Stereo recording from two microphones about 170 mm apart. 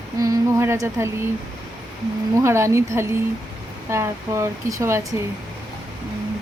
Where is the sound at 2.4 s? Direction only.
15° right (ahead or behind).